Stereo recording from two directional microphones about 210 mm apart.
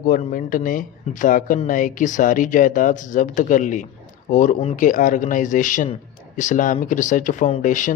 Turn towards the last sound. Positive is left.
turn(degrees=35)  # may be behind; listen again after turning